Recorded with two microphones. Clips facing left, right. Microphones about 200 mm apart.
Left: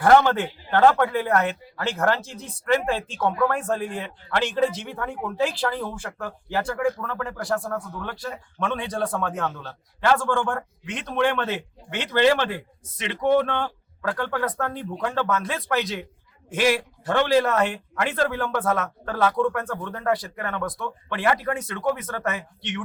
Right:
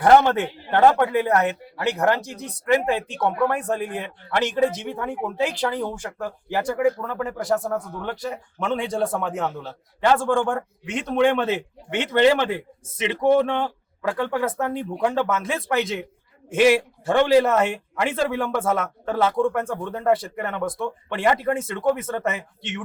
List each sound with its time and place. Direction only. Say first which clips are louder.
0.0 s speech: right 1 dB; 20° right (ahead or behind)
17.2 s speech: right 3 dB; 15° right (ahead or behind)
19.1 s speech: right 2 dB; 25° right (ahead or behind)